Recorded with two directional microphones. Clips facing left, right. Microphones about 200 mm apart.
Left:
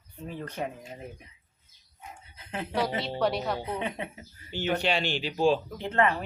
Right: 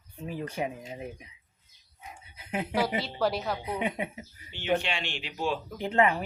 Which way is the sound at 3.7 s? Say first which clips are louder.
Right 2 dB; 15° right (ahead or behind).